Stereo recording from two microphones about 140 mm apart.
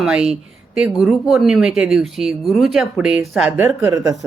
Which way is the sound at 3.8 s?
20° right (ahead or behind).